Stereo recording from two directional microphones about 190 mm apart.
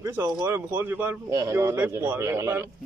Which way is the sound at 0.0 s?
10° right (ahead or behind).